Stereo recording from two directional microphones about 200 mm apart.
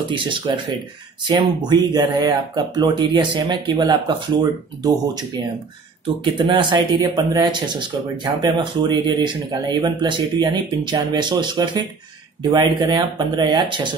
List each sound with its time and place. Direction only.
0.1 s speech: 25° right (ahead or behind)